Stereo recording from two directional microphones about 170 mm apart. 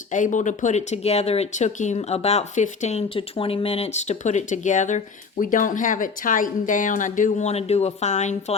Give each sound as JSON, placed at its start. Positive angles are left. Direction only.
{"t": 0.1, "sound": "speech", "side_deg": 50}